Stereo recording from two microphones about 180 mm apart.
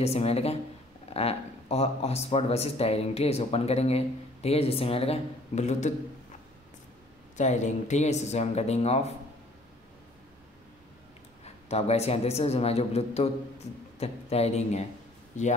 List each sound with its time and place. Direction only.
0.0 s speech: 35° left (ahead or behind)
7.3 s speech: 40° left (ahead or behind)
11.4 s speech: 35° left (ahead or behind)